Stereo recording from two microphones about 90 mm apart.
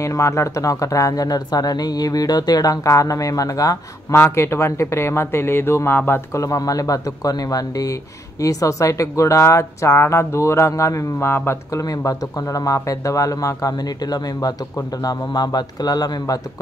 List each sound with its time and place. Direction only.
0.0 s speech: 35° left (ahead or behind)
11.8 s speech: 40° left (ahead or behind)